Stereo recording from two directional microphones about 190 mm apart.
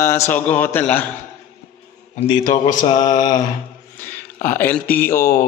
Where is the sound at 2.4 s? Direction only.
45° left (ahead or behind).